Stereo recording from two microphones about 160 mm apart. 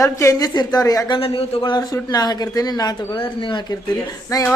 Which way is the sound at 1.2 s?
35° left (ahead or behind).